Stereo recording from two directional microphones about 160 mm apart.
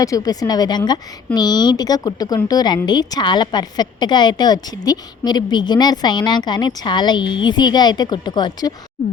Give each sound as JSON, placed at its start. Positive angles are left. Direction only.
{"t": 0.0, "sound": "speech", "side_deg": 20}